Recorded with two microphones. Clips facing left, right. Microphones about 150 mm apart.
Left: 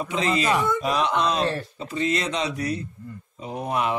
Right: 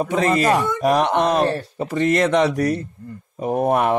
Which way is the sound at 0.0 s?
50° right (ahead or behind).